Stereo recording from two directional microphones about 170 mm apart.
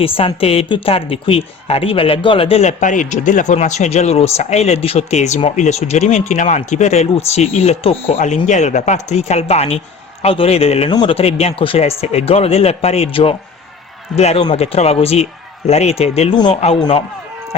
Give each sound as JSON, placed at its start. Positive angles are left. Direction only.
{"t": 0.0, "sound": "speech", "side_deg": 30}